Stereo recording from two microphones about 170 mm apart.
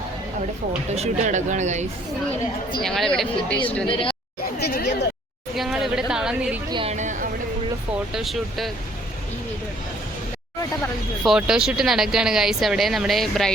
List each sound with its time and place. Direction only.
0.9 s speech: 40° right (ahead or behind)
2.8 s speech: 5° left (ahead or behind)
3.8 s speech: 30° left (ahead or behind)
4.6 s speech: 70° left (ahead or behind)
5.5 s a sound: centre (ahead or behind)
6.7 s speech: 30° right (ahead or behind)
6.9 s a sound: 45° right (ahead or behind)
8.1 s speech: centre (ahead or behind)
11.2 s speech: 5° right (ahead or behind)